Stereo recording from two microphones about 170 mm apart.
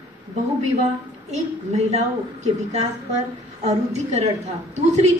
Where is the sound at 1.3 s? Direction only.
40° right (ahead or behind).